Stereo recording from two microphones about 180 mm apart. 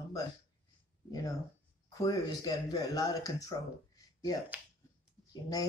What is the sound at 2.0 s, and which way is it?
Speech, 20° left (ahead or behind).